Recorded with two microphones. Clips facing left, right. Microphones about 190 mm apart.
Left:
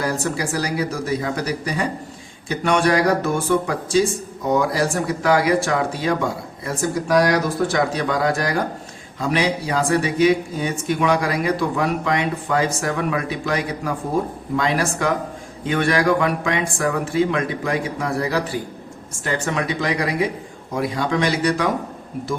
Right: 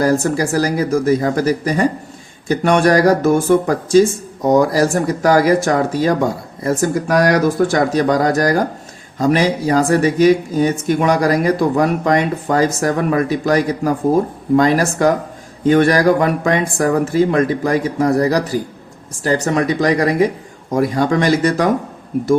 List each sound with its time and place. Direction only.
0.0 s speech: 45° right (ahead or behind)